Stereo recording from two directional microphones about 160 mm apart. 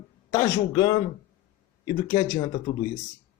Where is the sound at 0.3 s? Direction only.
25° left (ahead or behind).